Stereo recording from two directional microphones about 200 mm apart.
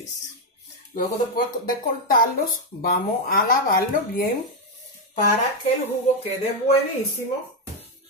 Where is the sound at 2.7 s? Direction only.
45° left (ahead or behind).